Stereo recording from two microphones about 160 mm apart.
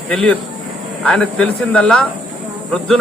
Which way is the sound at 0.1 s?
5° left (ahead or behind).